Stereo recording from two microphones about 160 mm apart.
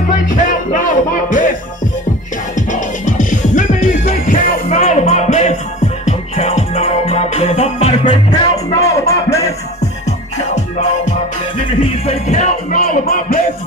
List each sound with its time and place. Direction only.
0.3 s music: 55° left (ahead or behind)
2.7 s music: 50° left (ahead or behind)
4.7 s music: 45° left (ahead or behind)
9.0 s music: 20° left (ahead or behind)
12.1 s music: 45° left (ahead or behind)
12.8 s music: 65° left (ahead or behind)